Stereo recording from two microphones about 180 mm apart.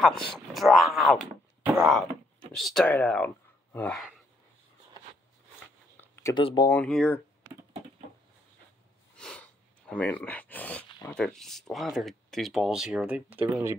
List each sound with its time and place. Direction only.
0.0 s speech: centre (ahead or behind)
2.5 s speech: centre (ahead or behind)
5.9 s a sound: 10° left (ahead or behind)
6.3 s speech: 25° left (ahead or behind)
6.7 s speech: 5° left (ahead or behind)
9.1 s a sound: 5° left (ahead or behind)
11.1 s speech: 5° left (ahead or behind); by 13.7 s 10° right (ahead or behind)